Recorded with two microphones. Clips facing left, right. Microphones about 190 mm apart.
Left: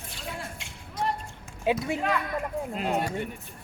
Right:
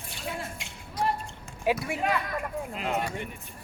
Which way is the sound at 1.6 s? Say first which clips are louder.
Left 1 dB; 20° left (ahead or behind).